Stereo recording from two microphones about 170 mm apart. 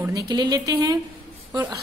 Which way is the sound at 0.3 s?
25° right (ahead or behind).